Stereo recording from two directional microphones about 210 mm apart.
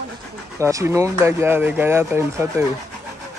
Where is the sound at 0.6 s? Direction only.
15° right (ahead or behind).